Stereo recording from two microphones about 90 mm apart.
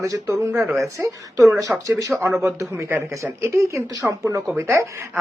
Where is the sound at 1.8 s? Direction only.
40° right (ahead or behind).